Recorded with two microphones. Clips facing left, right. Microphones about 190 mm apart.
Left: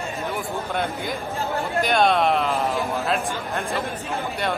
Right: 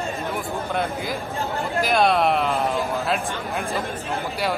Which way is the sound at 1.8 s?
Centre (ahead or behind).